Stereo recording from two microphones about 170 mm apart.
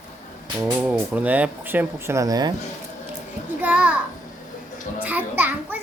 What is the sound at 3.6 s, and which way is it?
Speech, 10° right (ahead or behind).